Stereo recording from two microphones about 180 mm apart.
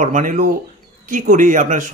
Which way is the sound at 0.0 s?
45° right (ahead or behind).